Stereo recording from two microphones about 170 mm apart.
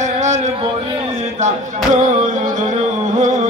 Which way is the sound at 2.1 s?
45° right (ahead or behind).